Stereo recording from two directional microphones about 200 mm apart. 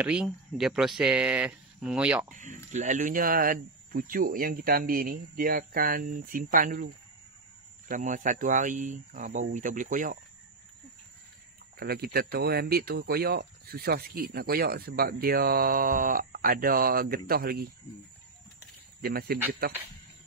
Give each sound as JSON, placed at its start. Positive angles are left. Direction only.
{"t": 0.0, "sound": "speech", "side_deg": -5}
{"t": 2.2, "sound": "speech", "side_deg": -40}
{"t": 7.9, "sound": "speech", "side_deg": -40}
{"t": 11.8, "sound": "speech", "side_deg": -50}
{"t": 18.9, "sound": "speech", "side_deg": -50}